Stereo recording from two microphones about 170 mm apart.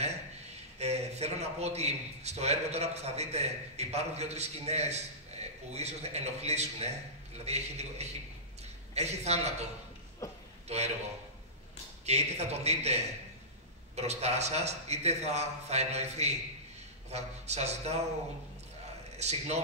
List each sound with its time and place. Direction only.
0.7 s a man's voice: 40° right (ahead or behind)
10.7 s a man's voice: 40° right (ahead or behind)
12.1 s a man's voice: 40° right (ahead or behind)
19.1 s a man's voice: 40° right (ahead or behind)